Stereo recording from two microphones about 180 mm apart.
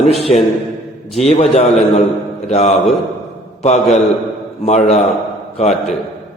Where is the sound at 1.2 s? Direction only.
35° left (ahead or behind).